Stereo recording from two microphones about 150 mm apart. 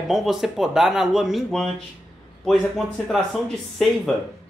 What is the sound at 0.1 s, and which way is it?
Speech, centre (ahead or behind).